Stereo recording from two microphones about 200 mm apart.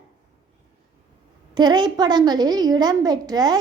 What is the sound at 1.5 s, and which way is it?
A woman's voice, 20° right (ahead or behind).